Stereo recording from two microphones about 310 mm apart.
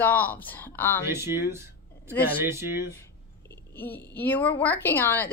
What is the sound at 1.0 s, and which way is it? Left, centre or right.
Speech, centre.